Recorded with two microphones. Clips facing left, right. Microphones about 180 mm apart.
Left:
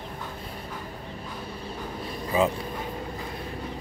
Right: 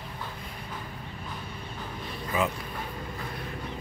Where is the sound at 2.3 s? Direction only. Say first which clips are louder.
Left 5 dB; 35° left (ahead or behind).